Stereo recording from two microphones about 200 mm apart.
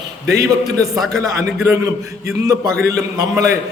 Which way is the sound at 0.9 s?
Centre (ahead or behind).